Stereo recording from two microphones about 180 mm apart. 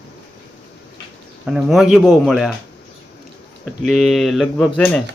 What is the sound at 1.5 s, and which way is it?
A man's voice, centre (ahead or behind).